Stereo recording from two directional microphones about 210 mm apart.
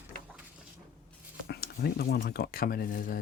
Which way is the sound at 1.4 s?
50° left (ahead or behind).